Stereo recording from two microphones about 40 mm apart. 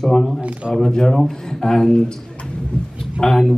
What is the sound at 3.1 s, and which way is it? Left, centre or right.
Speech, centre.